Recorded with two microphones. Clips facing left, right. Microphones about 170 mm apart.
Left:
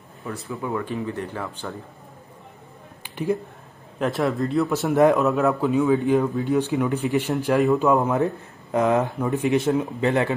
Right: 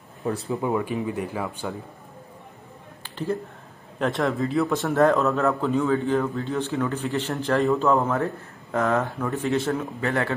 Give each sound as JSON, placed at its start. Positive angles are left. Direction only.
{"t": 0.5, "sound": "speech", "side_deg": -20}
{"t": 3.0, "sound": "a sound", "side_deg": 15}
{"t": 4.0, "sound": "speech", "side_deg": 0}
{"t": 4.8, "sound": "a man's voice", "side_deg": 15}